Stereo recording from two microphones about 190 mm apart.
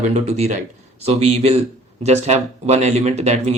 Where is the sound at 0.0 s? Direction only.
35° right (ahead or behind).